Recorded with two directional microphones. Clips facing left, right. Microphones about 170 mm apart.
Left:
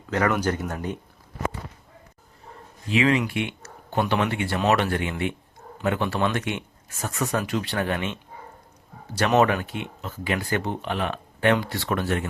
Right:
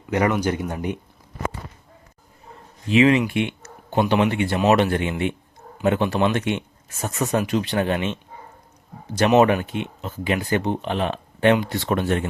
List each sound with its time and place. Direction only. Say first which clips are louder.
0.1 s speech: right 3 dB; 15° right (ahead or behind)
2.9 s speech: right 5 dB; 20° right (ahead or behind)